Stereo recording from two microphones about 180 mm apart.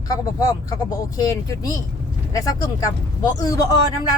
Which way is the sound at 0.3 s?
20° left (ahead or behind).